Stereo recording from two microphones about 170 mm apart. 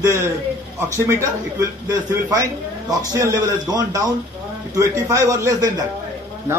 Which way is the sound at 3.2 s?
20° right (ahead or behind).